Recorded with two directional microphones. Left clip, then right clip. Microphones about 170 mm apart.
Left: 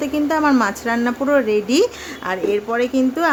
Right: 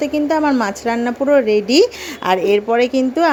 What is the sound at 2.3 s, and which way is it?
A woman's voice, 35° right (ahead or behind).